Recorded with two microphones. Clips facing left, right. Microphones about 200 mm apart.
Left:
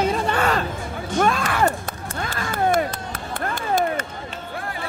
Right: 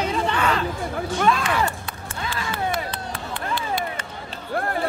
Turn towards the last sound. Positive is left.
turn(degrees=45)  # may be behind; listen again after turning